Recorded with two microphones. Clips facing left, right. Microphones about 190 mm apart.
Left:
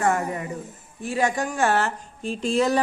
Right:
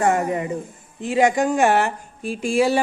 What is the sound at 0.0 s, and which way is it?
A woman's voice, 20° right (ahead or behind).